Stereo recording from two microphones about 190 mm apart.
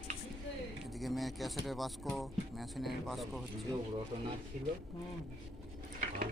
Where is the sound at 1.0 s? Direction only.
Centre (ahead or behind).